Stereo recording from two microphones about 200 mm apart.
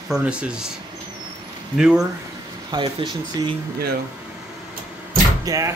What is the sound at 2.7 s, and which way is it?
Speech, 25° right (ahead or behind).